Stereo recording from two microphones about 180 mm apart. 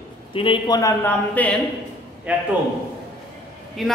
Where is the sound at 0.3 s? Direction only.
30° left (ahead or behind); by 1.6 s 10° left (ahead or behind).